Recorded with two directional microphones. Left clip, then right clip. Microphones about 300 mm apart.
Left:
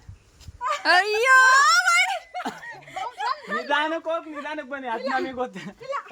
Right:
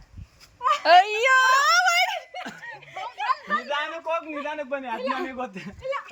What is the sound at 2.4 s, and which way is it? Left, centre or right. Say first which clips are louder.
Snicker: left 3 dB; centre.